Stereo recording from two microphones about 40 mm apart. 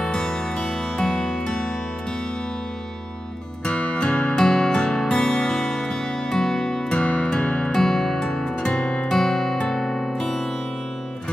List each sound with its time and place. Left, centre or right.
0.0 s music: left
3.6 s music: left
4.5 s music: centre
7.7 s music: centre
9.1 s music: centre